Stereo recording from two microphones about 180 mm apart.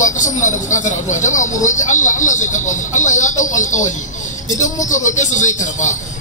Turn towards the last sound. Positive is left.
turn(degrees=45)  # may be behind; listen again after turning